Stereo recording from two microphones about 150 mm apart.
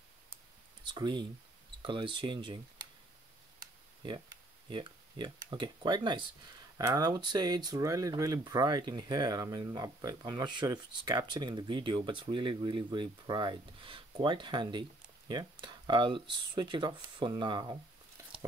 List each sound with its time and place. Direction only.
0.8 s speech: 30° right (ahead or behind)
4.6 s speech: 30° right (ahead or behind)